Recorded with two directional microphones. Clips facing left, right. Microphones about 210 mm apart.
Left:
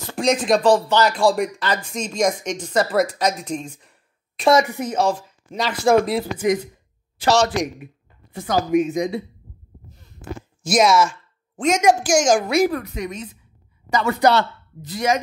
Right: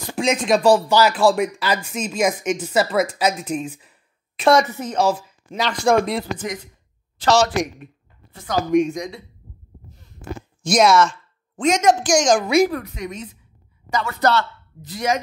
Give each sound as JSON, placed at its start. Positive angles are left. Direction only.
{"t": 0.1, "sound": "a woman's voice", "side_deg": 0}
{"t": 4.6, "sound": "a woman's voice", "side_deg": 15}
{"t": 4.9, "sound": "a woman's voice", "side_deg": 0}
{"t": 10.6, "sound": "a woman's voice", "side_deg": 0}